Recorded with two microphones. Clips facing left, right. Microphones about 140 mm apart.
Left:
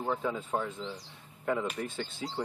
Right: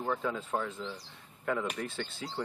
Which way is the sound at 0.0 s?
10° left (ahead or behind).